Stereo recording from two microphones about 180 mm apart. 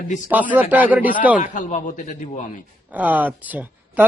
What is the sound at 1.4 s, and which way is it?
A man's voice, 45° left (ahead or behind).